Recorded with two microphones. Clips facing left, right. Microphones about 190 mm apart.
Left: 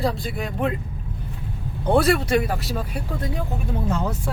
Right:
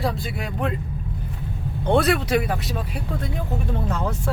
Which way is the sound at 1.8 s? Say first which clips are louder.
Left 1 dB; 5° left (ahead or behind).